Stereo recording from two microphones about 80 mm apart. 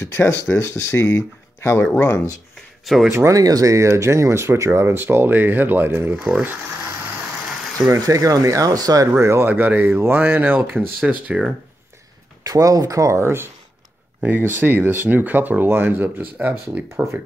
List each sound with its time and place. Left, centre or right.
0.0 s speech: left
2.8 s speech: centre
3.1 s speech: right
7.8 s speech: right
9.2 s speech: right
9.5 s speech: right
12.4 s speech: right
16.9 s speech: right